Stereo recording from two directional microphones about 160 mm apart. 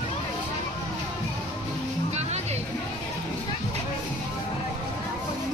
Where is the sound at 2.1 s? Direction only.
45° right (ahead or behind).